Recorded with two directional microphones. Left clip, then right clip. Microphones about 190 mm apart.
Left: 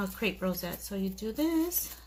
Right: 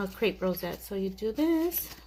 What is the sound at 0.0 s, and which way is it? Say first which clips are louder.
Speech: right 3 dB; 35° right (ahead or behind).